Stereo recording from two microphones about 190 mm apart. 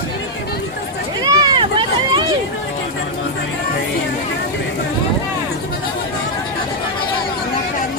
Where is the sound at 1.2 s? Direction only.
20° right (ahead or behind).